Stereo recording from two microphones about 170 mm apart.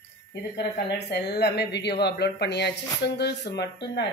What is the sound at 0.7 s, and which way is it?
Speech, 80° left.